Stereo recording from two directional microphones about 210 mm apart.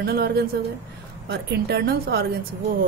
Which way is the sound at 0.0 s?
50° right (ahead or behind).